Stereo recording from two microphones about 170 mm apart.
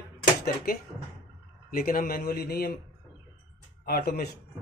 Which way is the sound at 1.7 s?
55° left (ahead or behind).